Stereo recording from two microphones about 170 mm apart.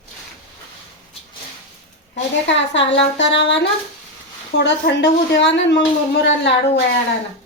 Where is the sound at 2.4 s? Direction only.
90° left.